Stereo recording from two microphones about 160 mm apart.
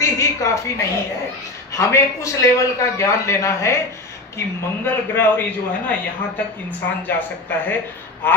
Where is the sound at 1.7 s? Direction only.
20° left (ahead or behind).